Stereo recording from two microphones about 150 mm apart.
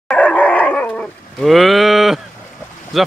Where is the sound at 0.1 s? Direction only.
5° left (ahead or behind).